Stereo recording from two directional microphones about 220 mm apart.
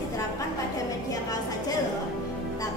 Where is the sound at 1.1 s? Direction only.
15° left (ahead or behind).